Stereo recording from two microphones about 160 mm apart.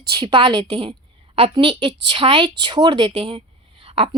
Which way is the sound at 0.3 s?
30° right (ahead or behind).